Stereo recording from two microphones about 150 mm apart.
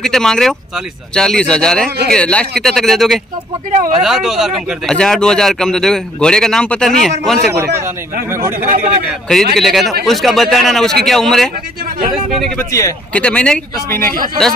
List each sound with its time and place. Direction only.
0.0 s speech: 5° left (ahead or behind)
1.9 s speech: 90° right
2.1 s speech: 5° left (ahead or behind)
7.5 s speech: 20° right (ahead or behind)
8.5 s speech: 65° right (ahead or behind)
9.6 s speech: centre (ahead or behind)
12.5 s speech: 20° left (ahead or behind)
13.1 s speech: 10° left (ahead or behind)